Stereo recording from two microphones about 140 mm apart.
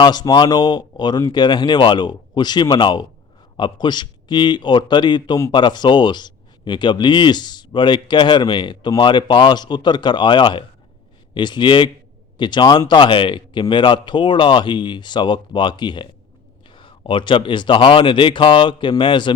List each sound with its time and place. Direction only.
0.0 s a man's voice: 30° left (ahead or behind)